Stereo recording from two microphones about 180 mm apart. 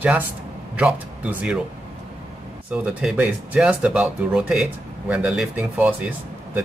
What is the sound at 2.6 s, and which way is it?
Speech, 5° right (ahead or behind).